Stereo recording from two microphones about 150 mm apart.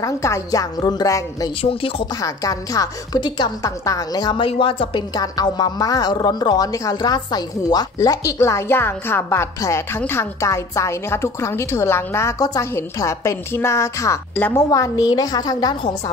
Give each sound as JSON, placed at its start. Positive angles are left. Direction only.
{"t": 0.0, "sound": "a woman's voice", "side_deg": 20}
{"t": 1.6, "sound": "speech", "side_deg": 40}
{"t": 2.2, "sound": "a woman's voice", "side_deg": 25}